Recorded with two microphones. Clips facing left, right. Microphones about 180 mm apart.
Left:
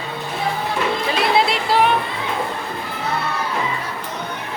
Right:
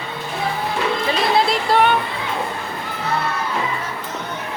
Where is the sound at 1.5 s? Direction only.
Centre (ahead or behind).